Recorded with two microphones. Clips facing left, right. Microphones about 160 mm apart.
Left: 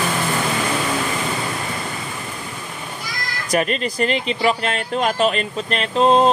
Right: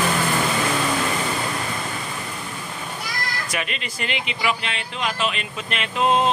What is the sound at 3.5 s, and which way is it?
Speech, 40° left (ahead or behind).